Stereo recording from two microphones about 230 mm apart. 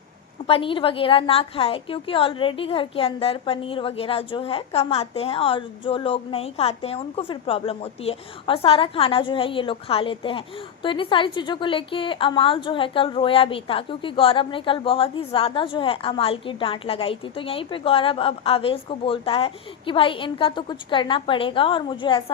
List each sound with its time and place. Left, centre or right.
0.4 s a woman's voice: left